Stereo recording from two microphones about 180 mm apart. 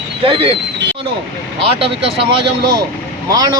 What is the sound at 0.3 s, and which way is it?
Speech, 30° right (ahead or behind).